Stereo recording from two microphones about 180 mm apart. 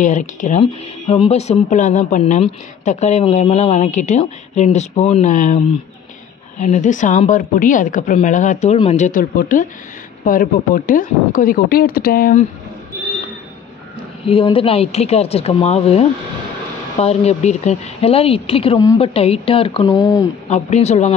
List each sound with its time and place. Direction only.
0.0 s speech: 45° left (ahead or behind)
6.6 s a woman's voice: 40° left (ahead or behind)
14.2 s speech: 30° left (ahead or behind)
19.9 s speech: 20° left (ahead or behind)
20.4 s speech: 40° left (ahead or behind)